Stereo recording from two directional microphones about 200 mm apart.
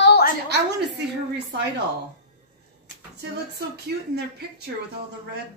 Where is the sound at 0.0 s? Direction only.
55° left (ahead or behind).